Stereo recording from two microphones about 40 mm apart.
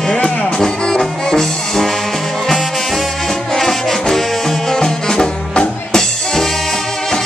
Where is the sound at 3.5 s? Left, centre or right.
Centre.